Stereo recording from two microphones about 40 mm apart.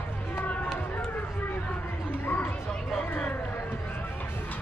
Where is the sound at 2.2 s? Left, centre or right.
Left.